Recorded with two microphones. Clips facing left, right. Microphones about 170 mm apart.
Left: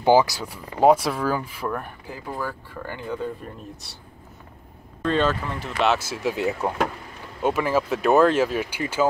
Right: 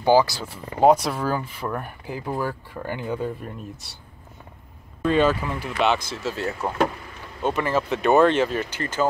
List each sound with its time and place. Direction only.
0.0 s speech: 15° left (ahead or behind)
2.0 s speech: 20° right (ahead or behind)
3.4 s speech: 5° right (ahead or behind)
5.0 s speech: 10° right (ahead or behind)
5.8 s speech: 5° left (ahead or behind)